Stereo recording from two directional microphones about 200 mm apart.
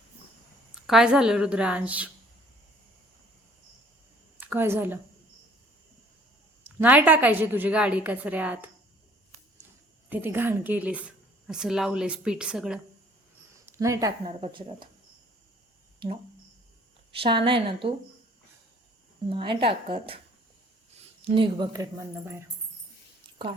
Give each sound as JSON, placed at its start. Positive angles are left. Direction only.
{"t": 0.7, "sound": "speech", "side_deg": -5}
{"t": 4.4, "sound": "speech", "side_deg": -10}
{"t": 6.7, "sound": "a woman's voice", "side_deg": -10}
{"t": 10.1, "sound": "speech", "side_deg": -10}
{"t": 13.7, "sound": "a woman's voice", "side_deg": -15}
{"t": 17.2, "sound": "a woman's voice", "side_deg": -25}
{"t": 19.3, "sound": "a woman's voice", "side_deg": -25}
{"t": 21.2, "sound": "a woman's voice", "side_deg": -25}